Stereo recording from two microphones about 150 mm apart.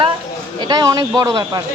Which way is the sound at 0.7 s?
25° right (ahead or behind).